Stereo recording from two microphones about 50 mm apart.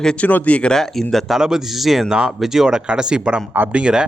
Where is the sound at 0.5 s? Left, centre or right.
Centre.